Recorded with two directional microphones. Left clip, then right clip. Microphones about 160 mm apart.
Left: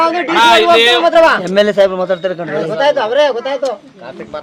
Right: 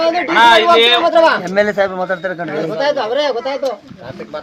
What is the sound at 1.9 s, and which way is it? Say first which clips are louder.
Speech: left 4 dB; 90° left.